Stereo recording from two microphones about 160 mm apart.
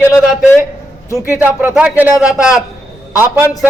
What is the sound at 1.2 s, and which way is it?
A man's voice, 15° right (ahead or behind).